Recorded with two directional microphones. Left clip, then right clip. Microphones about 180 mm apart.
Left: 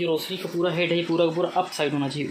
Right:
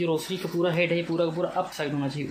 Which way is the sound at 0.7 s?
Centre (ahead or behind).